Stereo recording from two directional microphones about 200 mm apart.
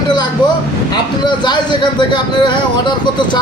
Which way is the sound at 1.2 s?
20° left (ahead or behind).